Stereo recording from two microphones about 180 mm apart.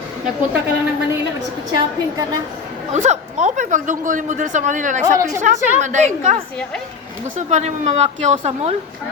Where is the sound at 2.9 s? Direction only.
40° right (ahead or behind).